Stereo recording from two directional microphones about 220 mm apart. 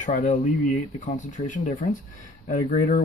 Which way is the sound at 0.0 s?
35° left (ahead or behind).